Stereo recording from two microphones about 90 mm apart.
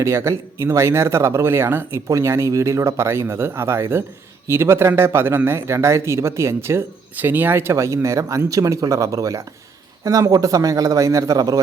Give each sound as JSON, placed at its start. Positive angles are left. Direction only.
{"t": 0.0, "sound": "speech", "side_deg": -35}